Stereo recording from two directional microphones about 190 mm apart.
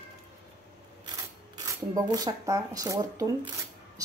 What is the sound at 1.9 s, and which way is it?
A woman's voice, 20° right (ahead or behind).